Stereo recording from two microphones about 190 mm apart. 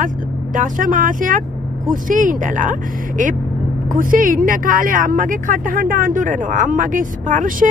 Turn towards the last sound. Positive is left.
turn(degrees=-45)  # may be behind; listen again after turning